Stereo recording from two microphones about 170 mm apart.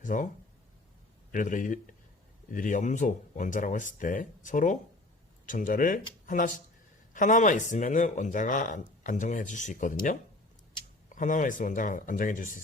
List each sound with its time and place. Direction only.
0.0 s speech: 50° left (ahead or behind)
1.3 s speech: 50° left (ahead or behind)